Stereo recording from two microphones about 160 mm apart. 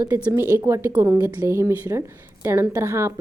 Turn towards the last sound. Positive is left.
turn(degrees=-15)  # may be behind; listen again after turning